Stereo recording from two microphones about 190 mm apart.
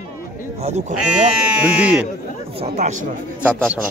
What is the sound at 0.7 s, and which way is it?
Speech, 35° right (ahead or behind).